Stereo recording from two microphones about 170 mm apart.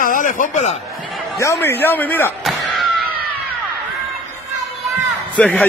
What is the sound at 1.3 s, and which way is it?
Speech, 15° left (ahead or behind).